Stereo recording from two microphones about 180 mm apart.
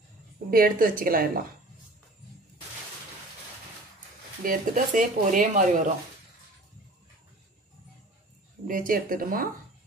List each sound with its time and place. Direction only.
0.5 s speech: 50° right (ahead or behind)
4.4 s speech: 50° right (ahead or behind)
8.6 s speech: 50° right (ahead or behind)